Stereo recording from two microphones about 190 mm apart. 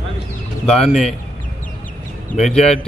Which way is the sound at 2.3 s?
35° left (ahead or behind).